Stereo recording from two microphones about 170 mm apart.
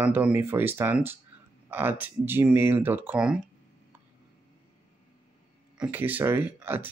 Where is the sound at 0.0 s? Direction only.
10° right (ahead or behind).